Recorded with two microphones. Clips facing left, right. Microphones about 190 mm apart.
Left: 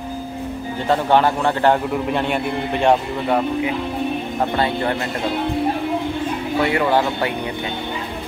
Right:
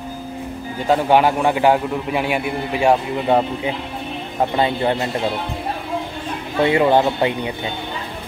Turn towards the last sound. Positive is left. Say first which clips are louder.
# right 3 dB
turn(degrees=-20)  # may be behind; listen again after turning